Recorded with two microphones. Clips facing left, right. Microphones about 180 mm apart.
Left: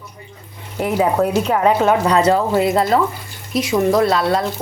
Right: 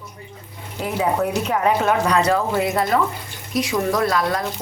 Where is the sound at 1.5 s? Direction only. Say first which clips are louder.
Left 3 dB; 30° left (ahead or behind).